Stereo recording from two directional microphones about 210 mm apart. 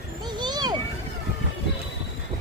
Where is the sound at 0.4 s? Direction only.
20° right (ahead or behind).